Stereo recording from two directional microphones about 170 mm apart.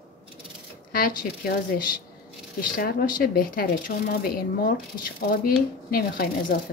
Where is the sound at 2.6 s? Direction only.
60° left (ahead or behind).